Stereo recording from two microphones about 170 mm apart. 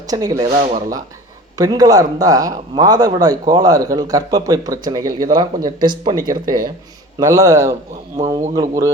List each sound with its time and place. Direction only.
0.1 s speech: 20° right (ahead or behind)
0.5 s speech: 45° right (ahead or behind)
1.5 s speech: 20° right (ahead or behind)